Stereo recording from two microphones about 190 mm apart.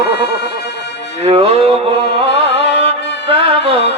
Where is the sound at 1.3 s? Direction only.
30° right (ahead or behind).